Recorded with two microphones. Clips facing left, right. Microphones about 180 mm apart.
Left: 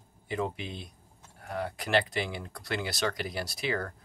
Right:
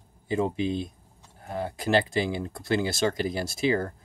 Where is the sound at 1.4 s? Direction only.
25° right (ahead or behind).